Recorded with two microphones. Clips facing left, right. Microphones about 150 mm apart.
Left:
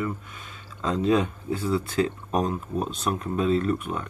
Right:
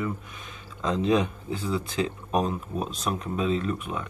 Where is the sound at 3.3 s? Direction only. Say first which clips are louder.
Left 4 dB; 40° left (ahead or behind).